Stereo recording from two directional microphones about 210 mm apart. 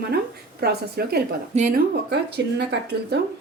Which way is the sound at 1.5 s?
35° right (ahead or behind).